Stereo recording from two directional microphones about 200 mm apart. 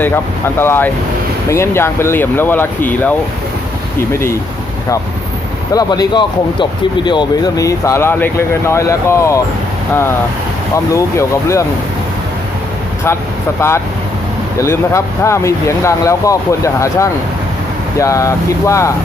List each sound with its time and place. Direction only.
0.0 s speech: 10° left (ahead or behind)
5.7 s speech: 20° left (ahead or behind)
10.9 s speech: 15° left (ahead or behind)
14.6 s speech: 15° left (ahead or behind)